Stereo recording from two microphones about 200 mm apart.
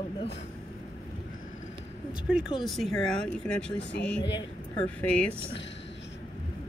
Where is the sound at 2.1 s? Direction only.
5° right (ahead or behind).